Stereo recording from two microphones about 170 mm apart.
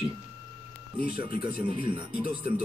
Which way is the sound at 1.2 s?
30° right (ahead or behind).